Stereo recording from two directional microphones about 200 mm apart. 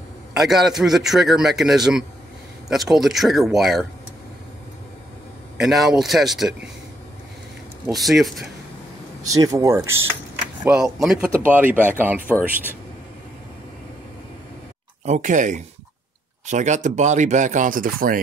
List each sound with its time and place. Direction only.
0.4 s a man's voice: centre (ahead or behind)
5.6 s a man's voice: centre (ahead or behind)
8.0 s a man's voice: centre (ahead or behind)
9.2 s speech: 15° right (ahead or behind)
10.6 s a man's voice: 5° right (ahead or behind)
15.0 s speech: 35° right (ahead or behind)